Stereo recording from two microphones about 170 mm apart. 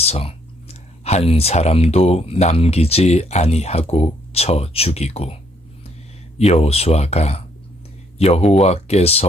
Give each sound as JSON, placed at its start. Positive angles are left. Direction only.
{"t": 0.0, "sound": "speech", "side_deg": 35}
{"t": 6.4, "sound": "speech", "side_deg": 40}